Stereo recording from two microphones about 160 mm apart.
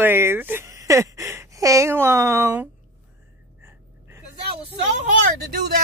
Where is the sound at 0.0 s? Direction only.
15° right (ahead or behind).